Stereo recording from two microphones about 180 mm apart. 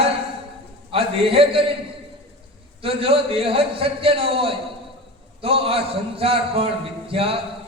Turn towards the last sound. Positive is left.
turn(degrees=-30)  # may be behind; listen again after turning